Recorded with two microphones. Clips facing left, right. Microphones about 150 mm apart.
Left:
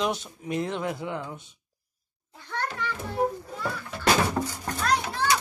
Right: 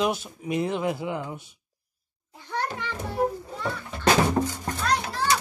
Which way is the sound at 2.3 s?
15° right (ahead or behind).